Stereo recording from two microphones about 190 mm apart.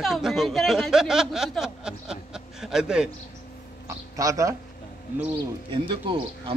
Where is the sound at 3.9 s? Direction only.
15° right (ahead or behind).